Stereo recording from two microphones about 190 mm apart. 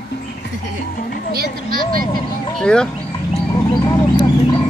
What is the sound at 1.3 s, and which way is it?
Speech, 50° right (ahead or behind).